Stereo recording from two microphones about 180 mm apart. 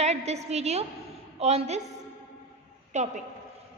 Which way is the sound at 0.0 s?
35° right (ahead or behind).